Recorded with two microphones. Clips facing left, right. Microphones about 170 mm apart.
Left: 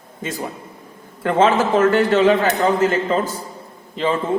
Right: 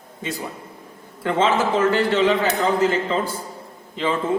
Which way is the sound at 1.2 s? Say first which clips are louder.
Left 3 dB; 50° left (ahead or behind).